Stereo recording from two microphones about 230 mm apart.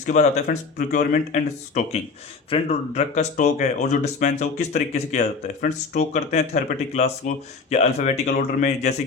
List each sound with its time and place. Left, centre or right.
0.0 s speech: left